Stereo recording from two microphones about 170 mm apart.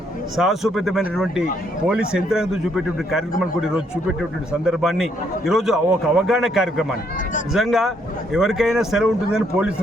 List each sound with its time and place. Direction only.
0.3 s a man's voice: centre (ahead or behind)
4.6 s a man's voice: centre (ahead or behind)